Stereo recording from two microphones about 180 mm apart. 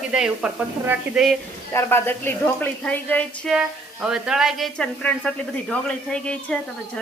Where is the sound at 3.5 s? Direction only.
5° right (ahead or behind).